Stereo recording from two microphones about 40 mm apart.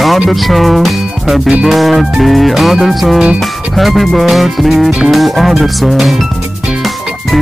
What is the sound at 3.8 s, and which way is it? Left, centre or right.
Speech, centre.